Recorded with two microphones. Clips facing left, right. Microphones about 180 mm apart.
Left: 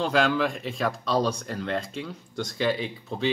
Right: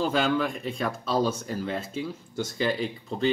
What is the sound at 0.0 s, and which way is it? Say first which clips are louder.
Speech: left 1 dB; centre (ahead or behind).